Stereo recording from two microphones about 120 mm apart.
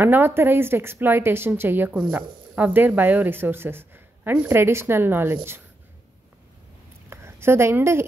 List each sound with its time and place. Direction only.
0.0 s speech: 15° right (ahead or behind)
7.1 s a woman's voice: 20° right (ahead or behind)